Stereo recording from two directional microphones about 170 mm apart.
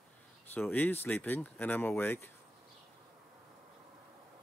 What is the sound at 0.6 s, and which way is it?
Speech, 10° left (ahead or behind).